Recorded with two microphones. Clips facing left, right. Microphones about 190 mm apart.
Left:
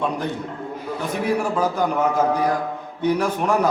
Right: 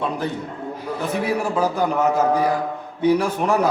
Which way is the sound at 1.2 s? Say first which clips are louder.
Left 2 dB; 10° right (ahead or behind).